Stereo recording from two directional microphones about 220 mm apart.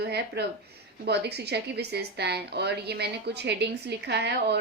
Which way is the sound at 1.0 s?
50° right (ahead or behind).